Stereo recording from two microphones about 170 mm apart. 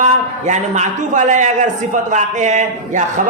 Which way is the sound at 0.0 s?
45° right (ahead or behind).